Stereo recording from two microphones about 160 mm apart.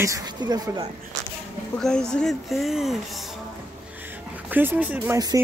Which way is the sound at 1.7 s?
5° left (ahead or behind).